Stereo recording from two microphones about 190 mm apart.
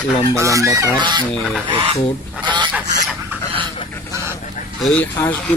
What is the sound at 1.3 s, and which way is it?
Speech, 5° left (ahead or behind).